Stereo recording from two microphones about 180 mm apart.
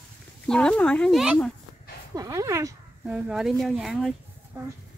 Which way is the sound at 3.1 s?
5° right (ahead or behind).